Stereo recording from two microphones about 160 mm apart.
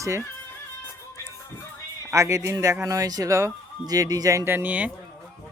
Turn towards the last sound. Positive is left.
turn(degrees=-10)  # may be behind; listen again after turning